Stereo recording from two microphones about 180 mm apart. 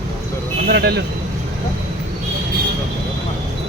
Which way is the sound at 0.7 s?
60° right (ahead or behind).